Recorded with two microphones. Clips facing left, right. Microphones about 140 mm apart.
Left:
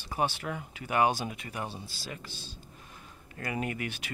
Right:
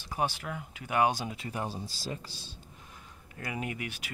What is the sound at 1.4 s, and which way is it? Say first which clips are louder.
Speech: right 2 dB; 30° right (ahead or behind).